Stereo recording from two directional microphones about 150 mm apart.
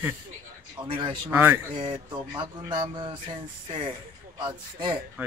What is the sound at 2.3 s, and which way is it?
A man's voice, 30° right (ahead or behind).